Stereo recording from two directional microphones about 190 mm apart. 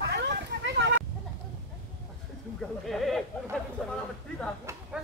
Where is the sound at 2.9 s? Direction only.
Centre (ahead or behind).